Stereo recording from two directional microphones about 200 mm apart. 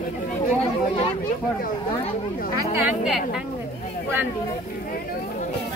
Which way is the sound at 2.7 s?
5° right (ahead or behind).